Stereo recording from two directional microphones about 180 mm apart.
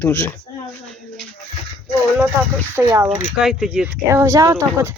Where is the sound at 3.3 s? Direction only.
Centre (ahead or behind).